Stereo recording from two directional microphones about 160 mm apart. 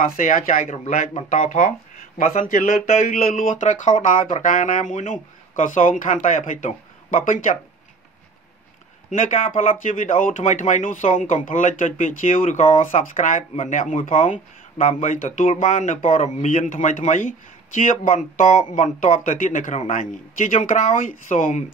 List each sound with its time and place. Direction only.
0.1 s speech: 55° left (ahead or behind)
9.1 s speech: 55° left (ahead or behind)